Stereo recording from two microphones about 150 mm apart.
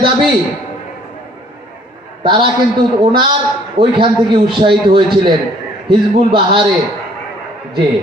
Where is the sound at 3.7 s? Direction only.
35° right (ahead or behind).